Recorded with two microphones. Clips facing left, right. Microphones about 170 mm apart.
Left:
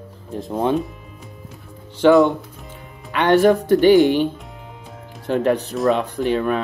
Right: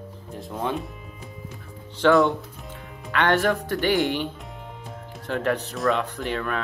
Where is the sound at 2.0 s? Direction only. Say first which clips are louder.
Left 5 dB; 15° left (ahead or behind).